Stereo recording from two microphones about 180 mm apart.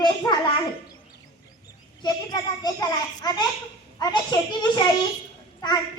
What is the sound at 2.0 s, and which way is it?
A child's voice, 25° left (ahead or behind).